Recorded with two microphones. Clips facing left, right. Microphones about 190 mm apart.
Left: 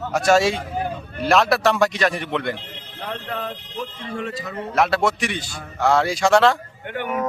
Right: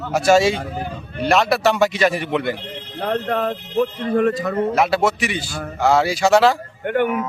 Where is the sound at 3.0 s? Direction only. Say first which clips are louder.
Right 9 dB; 45° right (ahead or behind).